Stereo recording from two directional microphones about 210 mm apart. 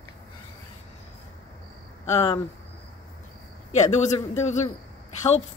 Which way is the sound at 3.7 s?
35° left (ahead or behind).